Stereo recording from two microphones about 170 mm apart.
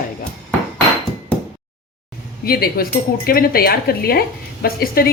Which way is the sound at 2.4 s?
60° left (ahead or behind).